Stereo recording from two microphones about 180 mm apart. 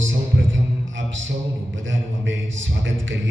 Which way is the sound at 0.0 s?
90° right.